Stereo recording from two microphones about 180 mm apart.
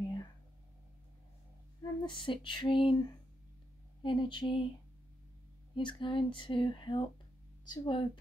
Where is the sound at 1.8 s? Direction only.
25° left (ahead or behind).